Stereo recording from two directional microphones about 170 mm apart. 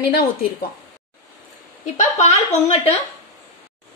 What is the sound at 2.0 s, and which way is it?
A woman's voice, 40° left (ahead or behind).